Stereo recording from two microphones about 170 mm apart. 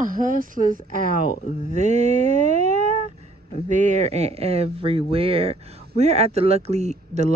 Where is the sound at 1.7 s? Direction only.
40° right (ahead or behind).